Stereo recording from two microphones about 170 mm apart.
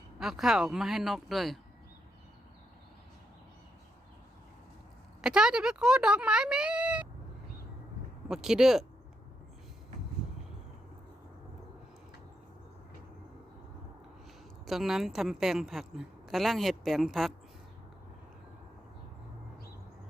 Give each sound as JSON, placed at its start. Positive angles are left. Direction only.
{"t": 0.2, "sound": "a woman's voice", "side_deg": 0}
{"t": 5.2, "sound": "speech", "side_deg": -5}
{"t": 8.3, "sound": "a woman's voice", "side_deg": -5}
{"t": 14.7, "sound": "a woman's voice", "side_deg": 0}